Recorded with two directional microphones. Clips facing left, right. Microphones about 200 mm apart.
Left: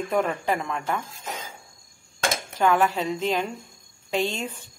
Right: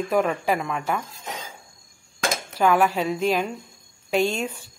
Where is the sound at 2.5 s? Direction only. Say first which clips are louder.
Right 2 dB; 10° right (ahead or behind).